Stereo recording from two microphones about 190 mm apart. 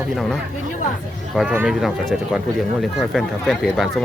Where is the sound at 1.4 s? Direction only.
5° right (ahead or behind).